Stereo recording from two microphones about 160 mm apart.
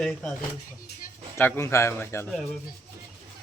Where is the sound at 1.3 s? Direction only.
15° left (ahead or behind).